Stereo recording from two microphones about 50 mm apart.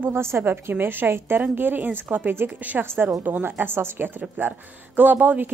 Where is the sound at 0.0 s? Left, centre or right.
Right.